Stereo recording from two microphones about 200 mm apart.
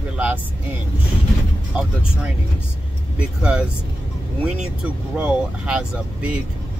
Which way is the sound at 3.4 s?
5° right (ahead or behind).